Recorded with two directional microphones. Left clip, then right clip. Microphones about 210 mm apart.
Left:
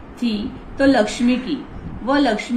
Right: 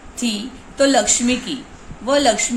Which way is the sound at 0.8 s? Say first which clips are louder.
Right 1 dB; 60° right (ahead or behind).